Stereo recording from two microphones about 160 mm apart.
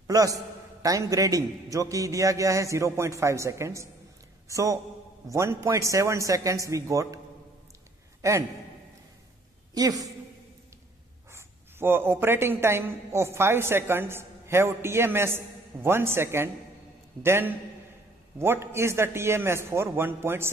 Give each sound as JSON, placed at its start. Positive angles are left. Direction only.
{"t": 0.0, "sound": "a man's voice", "side_deg": -20}
{"t": 8.2, "sound": "a man's voice", "side_deg": -20}
{"t": 9.8, "sound": "a man's voice", "side_deg": -25}
{"t": 11.3, "sound": "a man's voice", "side_deg": -15}